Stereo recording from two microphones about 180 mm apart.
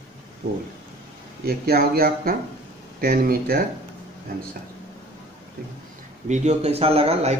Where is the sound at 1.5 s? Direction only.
55° right (ahead or behind).